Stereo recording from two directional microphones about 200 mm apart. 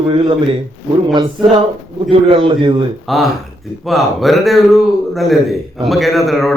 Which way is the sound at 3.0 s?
Centre (ahead or behind).